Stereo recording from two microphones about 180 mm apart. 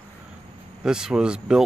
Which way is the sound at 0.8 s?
5° right (ahead or behind).